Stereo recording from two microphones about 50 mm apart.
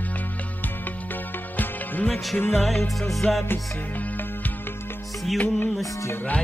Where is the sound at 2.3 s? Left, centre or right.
Left.